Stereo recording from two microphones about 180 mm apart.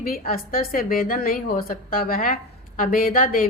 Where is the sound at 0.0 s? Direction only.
55° left (ahead or behind).